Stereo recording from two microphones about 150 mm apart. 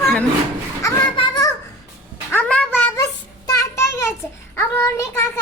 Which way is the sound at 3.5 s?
20° left (ahead or behind).